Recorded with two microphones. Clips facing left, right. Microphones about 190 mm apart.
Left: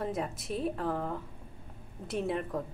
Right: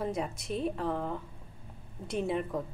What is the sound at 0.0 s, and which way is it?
Speech, centre (ahead or behind).